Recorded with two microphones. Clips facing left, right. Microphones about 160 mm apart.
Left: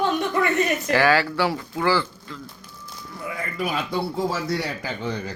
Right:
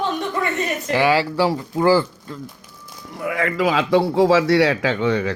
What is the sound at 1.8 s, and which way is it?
Speech, 40° right (ahead or behind).